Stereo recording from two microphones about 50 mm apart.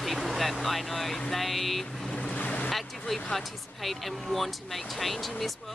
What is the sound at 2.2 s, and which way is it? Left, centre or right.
Boat, left.